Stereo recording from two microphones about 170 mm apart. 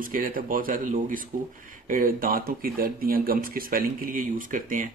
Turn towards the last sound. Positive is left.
turn(degrees=-50)  # may be behind; listen again after turning